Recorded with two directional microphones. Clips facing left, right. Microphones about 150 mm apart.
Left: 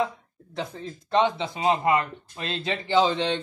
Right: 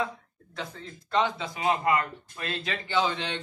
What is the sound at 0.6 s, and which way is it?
Speech, 25° left (ahead or behind).